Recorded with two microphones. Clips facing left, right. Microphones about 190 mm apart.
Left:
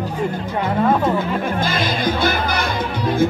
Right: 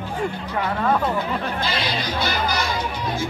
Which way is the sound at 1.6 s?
50° left (ahead or behind).